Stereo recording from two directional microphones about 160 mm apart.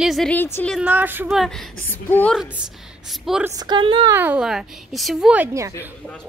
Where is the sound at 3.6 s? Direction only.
30° right (ahead or behind).